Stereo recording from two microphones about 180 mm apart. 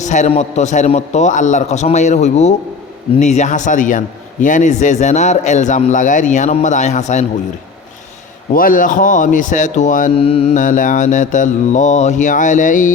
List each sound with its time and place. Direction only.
0.0 s a man's voice: 40° left (ahead or behind)
8.5 s a man's voice: 50° left (ahead or behind)
10.2 s a man's voice: 35° left (ahead or behind)